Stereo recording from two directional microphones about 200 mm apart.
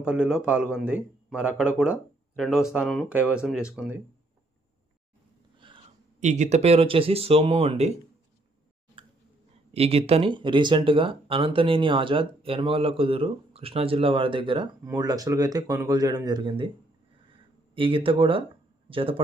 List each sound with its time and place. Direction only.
0.0 s a man's voice: 5° right (ahead or behind)
5.5 s a sound: 25° right (ahead or behind)
6.1 s speech: 35° right (ahead or behind)
9.7 s speech: 30° right (ahead or behind)
17.7 s speech: 25° right (ahead or behind)